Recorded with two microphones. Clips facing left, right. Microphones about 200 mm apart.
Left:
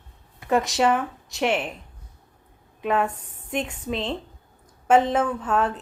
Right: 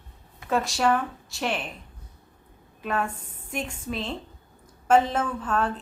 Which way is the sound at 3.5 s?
20° left (ahead or behind).